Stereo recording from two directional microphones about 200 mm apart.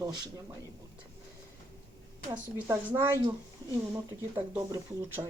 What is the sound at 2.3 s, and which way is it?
Speech, 10° right (ahead or behind).